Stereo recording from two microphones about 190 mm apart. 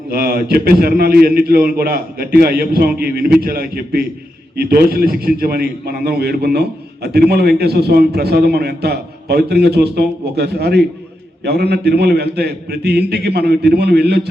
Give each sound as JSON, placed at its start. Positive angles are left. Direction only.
{"t": 0.1, "sound": "a man's voice", "side_deg": -50}